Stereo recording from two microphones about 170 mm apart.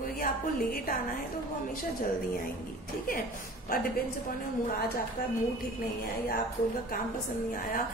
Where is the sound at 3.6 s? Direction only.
60° left (ahead or behind).